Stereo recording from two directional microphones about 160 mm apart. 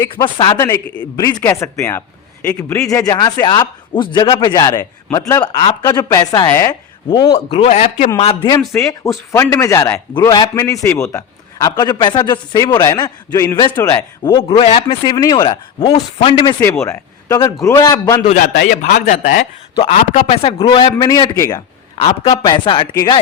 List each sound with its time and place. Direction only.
0.0 s a man's voice: 20° left (ahead or behind)
7.3 s speech: 35° left (ahead or behind)
8.2 s speech: 35° left (ahead or behind)
8.7 s a man's voice: 10° left (ahead or behind)
14.5 s speech: 30° left (ahead or behind)
16.8 s a man's voice: 20° left (ahead or behind)
18.3 s speech: 55° left (ahead or behind)
18.5 s a man's voice: 75° left (ahead or behind)
18.8 s a man's voice: 55° left (ahead or behind)
20.2 s a man's voice: 35° left (ahead or behind)